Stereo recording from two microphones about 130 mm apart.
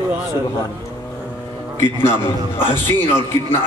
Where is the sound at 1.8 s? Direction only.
15° left (ahead or behind).